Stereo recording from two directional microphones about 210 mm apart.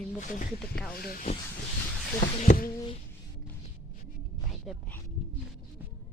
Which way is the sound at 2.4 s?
40° left (ahead or behind).